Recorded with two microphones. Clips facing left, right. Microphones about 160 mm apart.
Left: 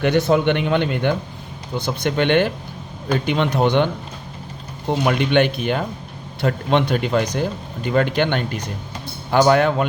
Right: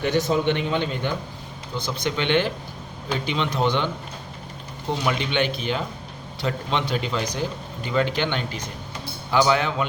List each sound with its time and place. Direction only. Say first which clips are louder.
0.0 s a man's voice: left 5 dB; 65° left (ahead or behind)
5.0 s a man's voice: left 7 dB; 55° left (ahead or behind)